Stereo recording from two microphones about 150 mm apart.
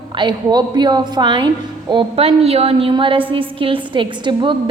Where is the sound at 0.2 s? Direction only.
30° right (ahead or behind).